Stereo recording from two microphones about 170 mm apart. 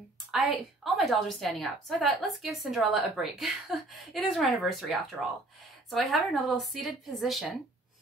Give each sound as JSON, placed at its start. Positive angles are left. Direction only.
{"t": 0.3, "sound": "a woman's voice", "side_deg": 0}